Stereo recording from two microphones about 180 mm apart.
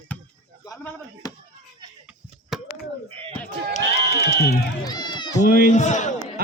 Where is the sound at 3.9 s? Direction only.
60° left (ahead or behind).